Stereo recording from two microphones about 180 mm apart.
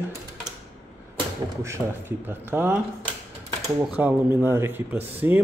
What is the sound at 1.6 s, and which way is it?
Speech, 15° right (ahead or behind).